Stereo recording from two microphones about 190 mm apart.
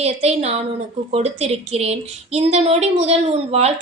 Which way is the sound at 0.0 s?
35° right (ahead or behind).